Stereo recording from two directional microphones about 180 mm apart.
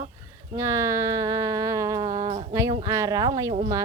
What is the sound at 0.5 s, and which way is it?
Speech, 15° right (ahead or behind).